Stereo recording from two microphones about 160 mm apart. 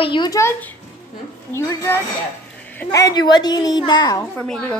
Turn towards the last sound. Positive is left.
turn(degrees=5)  # may be behind; listen again after turning